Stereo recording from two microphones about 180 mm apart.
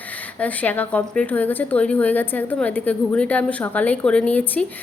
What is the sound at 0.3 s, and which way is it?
A woman's voice, 10° left (ahead or behind).